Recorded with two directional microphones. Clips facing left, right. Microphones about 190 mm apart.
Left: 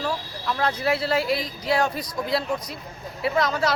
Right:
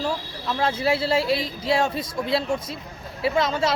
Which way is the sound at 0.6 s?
25° right (ahead or behind).